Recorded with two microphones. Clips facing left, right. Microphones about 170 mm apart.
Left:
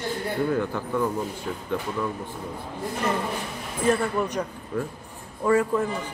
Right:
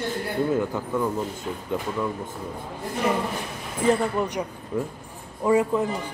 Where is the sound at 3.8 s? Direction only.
20° right (ahead or behind).